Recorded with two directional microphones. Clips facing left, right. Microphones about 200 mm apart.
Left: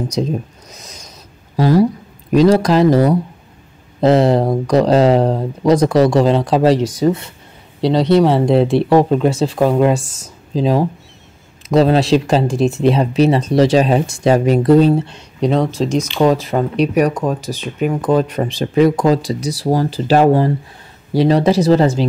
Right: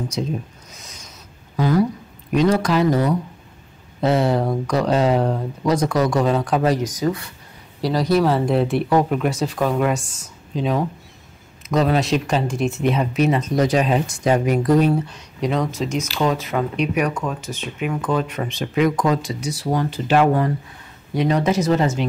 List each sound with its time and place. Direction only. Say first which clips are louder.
1.6 s speech: left 6 dB; 35° left (ahead or behind)